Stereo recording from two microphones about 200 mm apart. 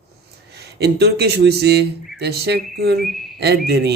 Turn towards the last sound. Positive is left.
turn(degrees=-55)  # may be behind; listen again after turning